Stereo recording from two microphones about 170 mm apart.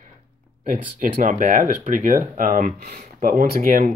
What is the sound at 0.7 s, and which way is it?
Speech, 50° right (ahead or behind).